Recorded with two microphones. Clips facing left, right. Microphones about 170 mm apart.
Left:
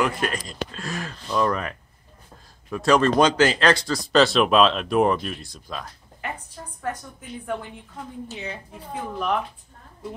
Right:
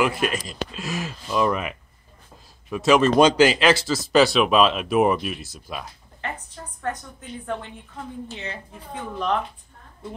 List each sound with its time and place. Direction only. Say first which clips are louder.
0.0 s speech: right 2 dB; 10° right (ahead or behind)
0.3 s speech: right 1 dB; 20° right (ahead or behind)
0.8 s speech: right 2 dB; 5° right (ahead or behind)
6.2 s a woman's voice: right 1 dB; 10° left (ahead or behind)